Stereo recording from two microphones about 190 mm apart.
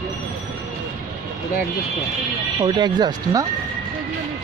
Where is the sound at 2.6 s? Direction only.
20° right (ahead or behind).